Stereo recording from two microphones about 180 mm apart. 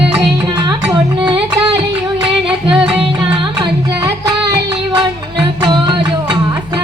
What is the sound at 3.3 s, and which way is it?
Music, 25° right (ahead or behind).